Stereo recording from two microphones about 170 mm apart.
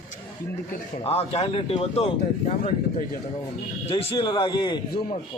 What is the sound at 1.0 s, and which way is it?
Speech, 35° left (ahead or behind).